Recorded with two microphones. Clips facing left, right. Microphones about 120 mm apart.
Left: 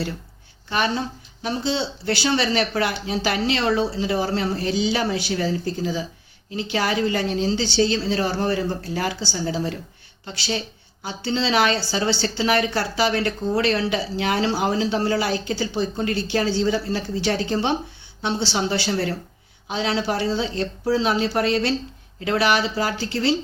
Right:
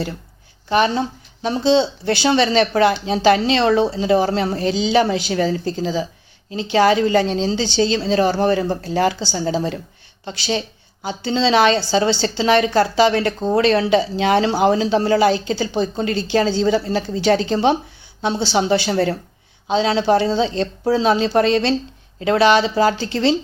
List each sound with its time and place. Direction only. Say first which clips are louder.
0.7 s speech: right 6 dB; 25° right (ahead or behind)
10.2 s speech: right 5 dB; 30° right (ahead or behind)